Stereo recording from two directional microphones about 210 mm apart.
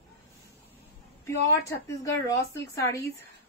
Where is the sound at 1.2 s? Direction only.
15° left (ahead or behind).